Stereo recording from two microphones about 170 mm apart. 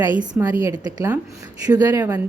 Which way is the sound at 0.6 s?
20° right (ahead or behind).